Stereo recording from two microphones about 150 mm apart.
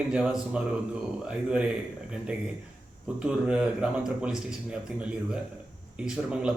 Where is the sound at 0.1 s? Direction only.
5° right (ahead or behind).